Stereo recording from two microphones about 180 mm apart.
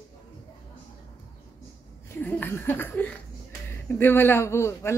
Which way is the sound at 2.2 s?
10° left (ahead or behind).